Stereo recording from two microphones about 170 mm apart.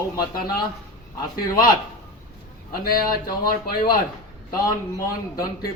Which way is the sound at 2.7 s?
60° left (ahead or behind).